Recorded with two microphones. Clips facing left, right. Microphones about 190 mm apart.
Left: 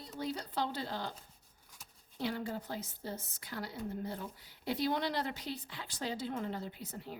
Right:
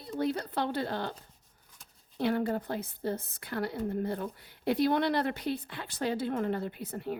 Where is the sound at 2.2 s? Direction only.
60° right (ahead or behind).